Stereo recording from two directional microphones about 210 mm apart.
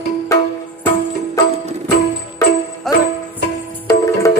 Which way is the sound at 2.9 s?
Centre (ahead or behind).